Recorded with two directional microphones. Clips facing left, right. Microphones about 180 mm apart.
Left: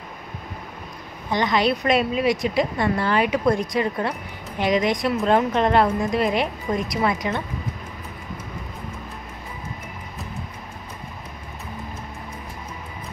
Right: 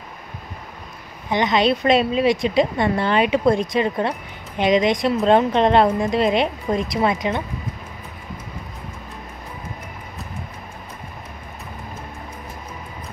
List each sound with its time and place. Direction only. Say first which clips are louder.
1.3 s a woman's voice: right 2 dB; 20° right (ahead or behind)